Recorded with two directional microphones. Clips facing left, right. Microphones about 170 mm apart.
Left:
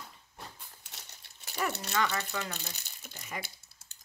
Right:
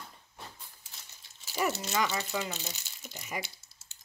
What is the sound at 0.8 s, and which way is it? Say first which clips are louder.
Crumpling: left 3 dB; 65° left (ahead or behind).